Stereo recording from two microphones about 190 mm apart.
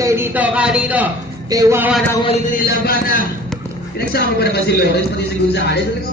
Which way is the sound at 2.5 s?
50° left (ahead or behind).